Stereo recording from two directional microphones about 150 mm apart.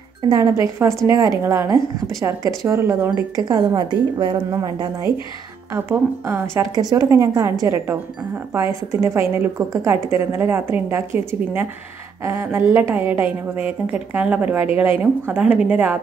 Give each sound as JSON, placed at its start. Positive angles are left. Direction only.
{"t": 0.3, "sound": "a woman's voice", "side_deg": -20}
{"t": 5.8, "sound": "a woman's voice", "side_deg": -15}
{"t": 9.0, "sound": "a woman's voice", "side_deg": -15}